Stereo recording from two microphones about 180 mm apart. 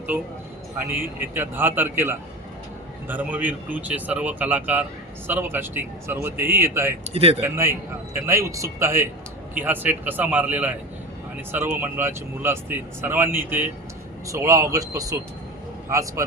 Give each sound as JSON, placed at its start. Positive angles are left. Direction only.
{"t": 0.8, "sound": "speech", "side_deg": -10}
{"t": 7.1, "sound": "speech", "side_deg": -35}
{"t": 7.4, "sound": "speech", "side_deg": -15}